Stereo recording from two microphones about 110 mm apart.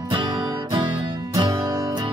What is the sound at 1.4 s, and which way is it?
Music, 50° right (ahead or behind).